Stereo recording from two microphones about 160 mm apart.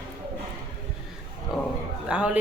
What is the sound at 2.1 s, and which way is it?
Speech, 5° right (ahead or behind).